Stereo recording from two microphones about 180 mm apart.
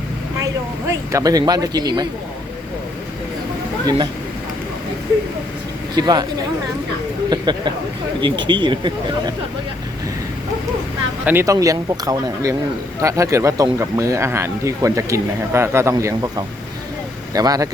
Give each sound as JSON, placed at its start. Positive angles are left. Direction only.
{"t": 0.3, "sound": "speech", "side_deg": -15}
{"t": 3.8, "sound": "speech", "side_deg": -25}
{"t": 5.9, "sound": "speech", "side_deg": -20}
{"t": 7.3, "sound": "speech", "side_deg": -25}
{"t": 11.3, "sound": "speech", "side_deg": -15}